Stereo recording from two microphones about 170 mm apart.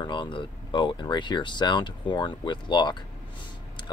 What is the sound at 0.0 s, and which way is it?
Speech, 25° left (ahead or behind).